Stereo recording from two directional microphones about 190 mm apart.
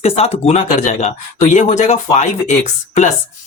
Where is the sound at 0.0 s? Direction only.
35° left (ahead or behind).